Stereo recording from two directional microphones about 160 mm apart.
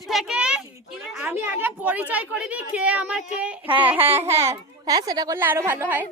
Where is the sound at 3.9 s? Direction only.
15° right (ahead or behind).